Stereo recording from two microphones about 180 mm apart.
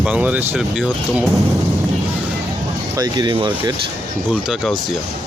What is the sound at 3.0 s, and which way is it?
Speech, 25° right (ahead or behind).